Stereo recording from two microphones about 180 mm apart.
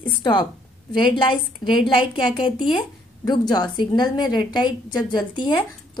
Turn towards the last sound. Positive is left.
turn(degrees=25)  # may be behind; listen again after turning